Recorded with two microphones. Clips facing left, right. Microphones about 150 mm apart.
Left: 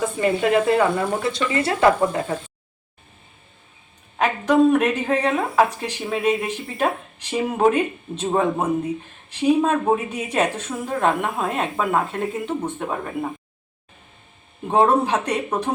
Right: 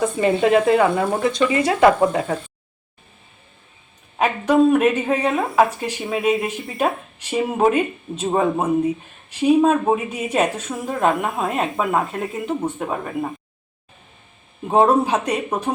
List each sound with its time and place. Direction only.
0.2 s speech: 25° right (ahead or behind)
4.2 s a woman's voice: 5° right (ahead or behind)
14.7 s speech: 10° right (ahead or behind)